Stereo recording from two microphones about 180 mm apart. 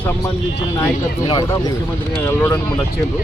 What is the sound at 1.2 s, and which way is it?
Speech, 20° left (ahead or behind).